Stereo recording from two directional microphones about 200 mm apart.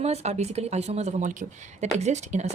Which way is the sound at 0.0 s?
30° right (ahead or behind).